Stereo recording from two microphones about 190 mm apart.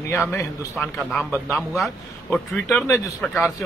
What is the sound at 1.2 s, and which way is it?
A man's voice, 10° right (ahead or behind).